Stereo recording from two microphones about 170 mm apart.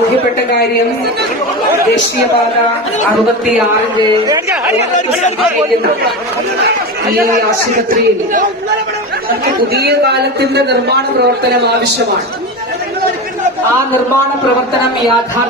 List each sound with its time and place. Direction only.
7.9 s speech: 50° right (ahead or behind)
9.6 s a man's voice: 70° right (ahead or behind)